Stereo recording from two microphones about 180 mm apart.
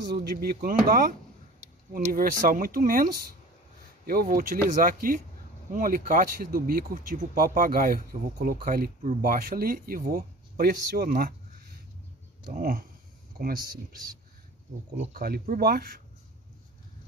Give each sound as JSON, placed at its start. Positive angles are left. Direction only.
{"t": 0.1, "sound": "speech", "side_deg": -55}
{"t": 12.4, "sound": "speech", "side_deg": -50}
{"t": 15.1, "sound": "speech", "side_deg": -55}